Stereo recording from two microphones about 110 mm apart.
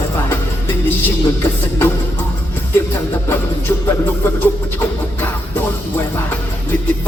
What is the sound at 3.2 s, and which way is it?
Music, 20° left (ahead or behind).